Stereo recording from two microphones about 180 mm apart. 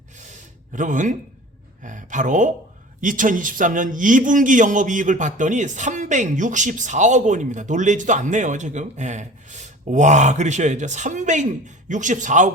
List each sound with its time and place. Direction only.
0.7 s a man's voice: 45° right (ahead or behind)